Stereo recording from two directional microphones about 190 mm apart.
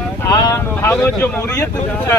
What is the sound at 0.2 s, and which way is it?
Wind noise, 20° left (ahead or behind).